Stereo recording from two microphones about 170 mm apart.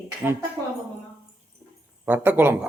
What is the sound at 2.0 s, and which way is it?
Speech, 10° right (ahead or behind).